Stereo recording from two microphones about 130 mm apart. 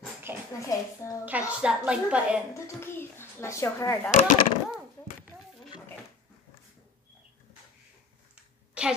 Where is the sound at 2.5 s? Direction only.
20° left (ahead or behind).